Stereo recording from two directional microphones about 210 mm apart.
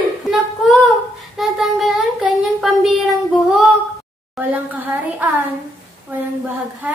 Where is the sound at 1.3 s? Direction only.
Centre (ahead or behind).